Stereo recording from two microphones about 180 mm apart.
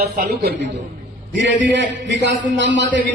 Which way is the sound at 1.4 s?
80° right.